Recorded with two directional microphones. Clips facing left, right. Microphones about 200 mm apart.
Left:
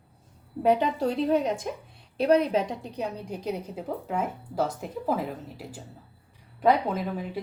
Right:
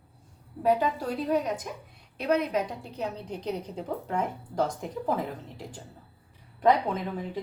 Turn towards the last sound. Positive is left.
turn(degrees=10)  # may be behind; listen again after turning